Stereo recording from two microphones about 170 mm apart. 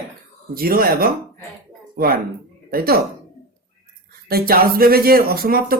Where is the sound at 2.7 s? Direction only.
65° right (ahead or behind).